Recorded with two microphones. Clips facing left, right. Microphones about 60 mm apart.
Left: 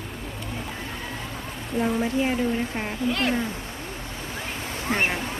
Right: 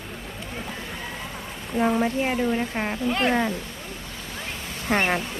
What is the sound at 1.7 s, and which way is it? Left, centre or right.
Speech, right.